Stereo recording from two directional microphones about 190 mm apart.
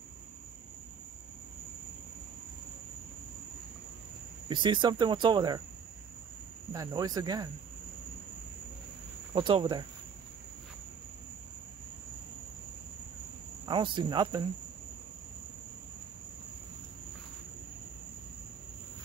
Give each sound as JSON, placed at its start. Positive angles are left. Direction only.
{"t": 4.5, "sound": "speech", "side_deg": -25}
{"t": 6.7, "sound": "speech", "side_deg": -20}
{"t": 9.3, "sound": "speech", "side_deg": -25}
{"t": 13.7, "sound": "speech", "side_deg": -25}